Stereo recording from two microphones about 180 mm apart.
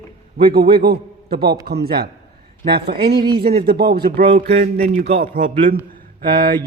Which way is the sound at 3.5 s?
60° right (ahead or behind).